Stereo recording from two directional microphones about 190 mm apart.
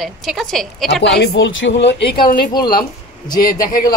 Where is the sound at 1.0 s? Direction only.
65° left (ahead or behind).